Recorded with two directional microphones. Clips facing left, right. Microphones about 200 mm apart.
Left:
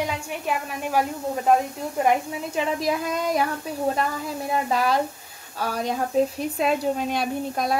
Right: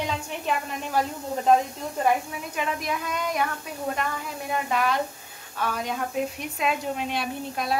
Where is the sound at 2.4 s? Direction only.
30° left (ahead or behind).